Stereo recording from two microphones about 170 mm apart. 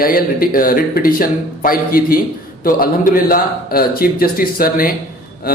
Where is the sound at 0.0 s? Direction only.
60° left (ahead or behind).